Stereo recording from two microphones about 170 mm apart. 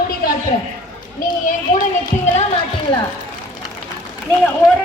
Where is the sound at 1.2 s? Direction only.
50° left (ahead or behind).